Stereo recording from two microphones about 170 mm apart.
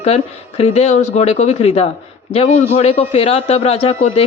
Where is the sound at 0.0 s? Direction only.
40° left (ahead or behind).